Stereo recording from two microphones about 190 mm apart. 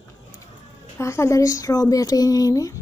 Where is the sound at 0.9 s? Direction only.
15° left (ahead or behind).